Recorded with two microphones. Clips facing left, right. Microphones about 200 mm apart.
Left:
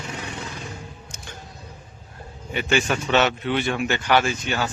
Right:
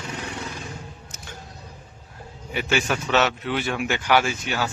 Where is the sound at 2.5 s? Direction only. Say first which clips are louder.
Left 2 dB; 5° right (ahead or behind).